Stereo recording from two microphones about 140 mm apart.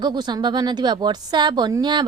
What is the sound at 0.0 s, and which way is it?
A woman's voice, 30° right (ahead or behind).